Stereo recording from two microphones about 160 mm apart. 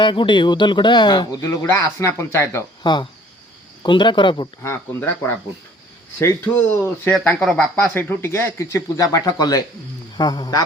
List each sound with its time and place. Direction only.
0.0 s speech: 30° left (ahead or behind)
2.8 s speech: 30° left (ahead or behind)
4.6 s speech: 15° left (ahead or behind)